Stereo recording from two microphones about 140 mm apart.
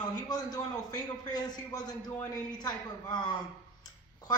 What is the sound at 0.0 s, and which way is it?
A man's voice, 30° left (ahead or behind).